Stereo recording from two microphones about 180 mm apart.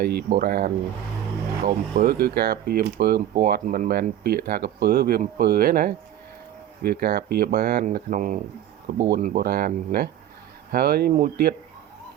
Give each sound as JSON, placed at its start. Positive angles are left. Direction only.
{"t": 0.0, "sound": "speech", "side_deg": -60}
{"t": 9.0, "sound": "speech", "side_deg": -60}